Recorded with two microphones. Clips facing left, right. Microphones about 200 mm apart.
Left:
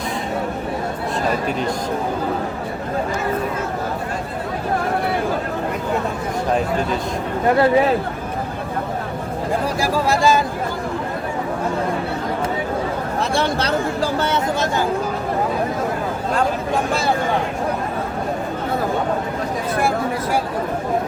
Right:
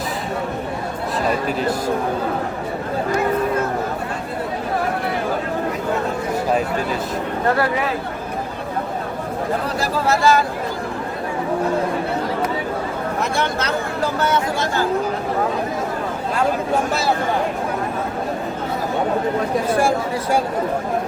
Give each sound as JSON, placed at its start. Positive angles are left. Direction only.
{"t": 1.5, "sound": "a man's voice", "side_deg": -5}
{"t": 7.4, "sound": "speech", "side_deg": 20}
{"t": 9.8, "sound": "speech", "side_deg": 15}
{"t": 13.3, "sound": "speech", "side_deg": 30}